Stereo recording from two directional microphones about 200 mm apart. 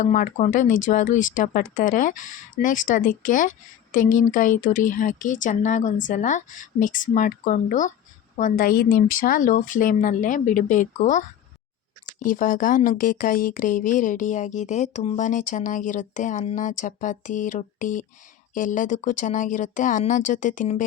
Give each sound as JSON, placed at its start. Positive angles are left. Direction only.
{"t": 0.0, "sound": "speech", "side_deg": 35}